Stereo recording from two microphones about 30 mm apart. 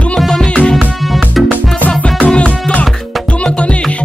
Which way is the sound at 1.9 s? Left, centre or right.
Left.